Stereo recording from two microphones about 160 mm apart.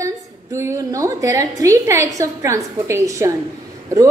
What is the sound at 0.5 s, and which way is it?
A woman's voice, 20° right (ahead or behind).